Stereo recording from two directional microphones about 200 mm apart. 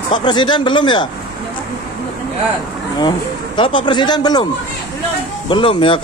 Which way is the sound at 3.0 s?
20° left (ahead or behind).